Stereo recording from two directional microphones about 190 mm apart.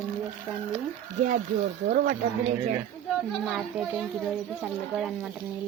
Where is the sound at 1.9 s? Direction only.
45° right (ahead or behind).